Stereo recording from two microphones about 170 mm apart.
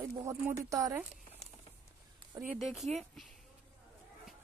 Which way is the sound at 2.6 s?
Centre (ahead or behind).